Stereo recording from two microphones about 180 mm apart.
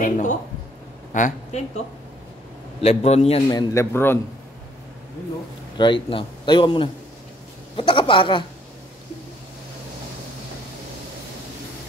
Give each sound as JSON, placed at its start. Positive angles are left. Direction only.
{"t": 0.0, "sound": "a woman's voice", "side_deg": 45}
{"t": 2.8, "sound": "a man's voice", "side_deg": 35}
{"t": 3.5, "sound": "a man's voice", "side_deg": 15}
{"t": 5.8, "sound": "a man's voice", "side_deg": 25}